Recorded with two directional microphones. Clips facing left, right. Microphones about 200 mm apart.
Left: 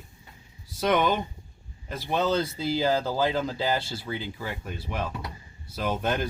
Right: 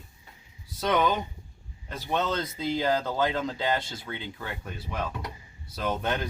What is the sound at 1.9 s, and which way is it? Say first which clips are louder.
Speech: left 3 dB; 5° left (ahead or behind).